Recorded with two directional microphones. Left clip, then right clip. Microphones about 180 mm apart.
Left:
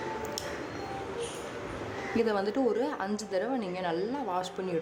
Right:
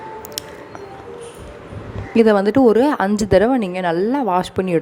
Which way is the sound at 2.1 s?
50° right (ahead or behind).